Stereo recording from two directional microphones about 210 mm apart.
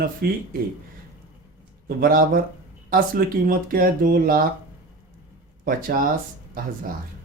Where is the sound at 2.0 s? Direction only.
45° right (ahead or behind).